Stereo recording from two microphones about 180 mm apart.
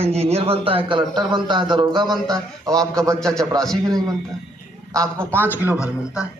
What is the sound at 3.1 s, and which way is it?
Speech, 5° left (ahead or behind).